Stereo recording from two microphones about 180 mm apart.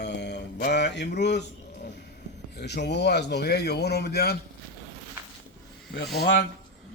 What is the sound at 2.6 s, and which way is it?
A man's voice, 70° left (ahead or behind).